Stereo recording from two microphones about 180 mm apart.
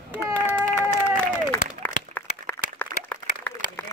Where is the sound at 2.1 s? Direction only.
10° left (ahead or behind).